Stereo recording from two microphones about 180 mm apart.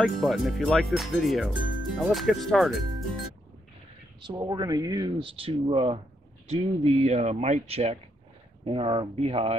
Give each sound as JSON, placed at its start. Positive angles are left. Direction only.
{"t": 0.0, "sound": "speech", "side_deg": 0}
{"t": 4.2, "sound": "speech", "side_deg": -25}